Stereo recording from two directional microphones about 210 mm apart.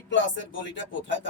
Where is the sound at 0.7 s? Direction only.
60° left (ahead or behind).